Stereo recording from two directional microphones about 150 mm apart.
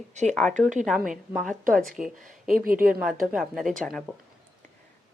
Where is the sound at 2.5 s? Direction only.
70° right (ahead or behind).